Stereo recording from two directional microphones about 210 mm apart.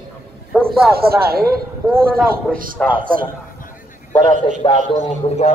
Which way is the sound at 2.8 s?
5° left (ahead or behind).